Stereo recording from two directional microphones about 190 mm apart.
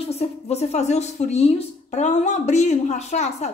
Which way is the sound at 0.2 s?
35° left (ahead or behind).